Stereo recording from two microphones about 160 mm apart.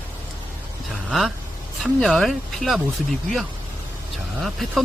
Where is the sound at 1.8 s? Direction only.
Centre (ahead or behind).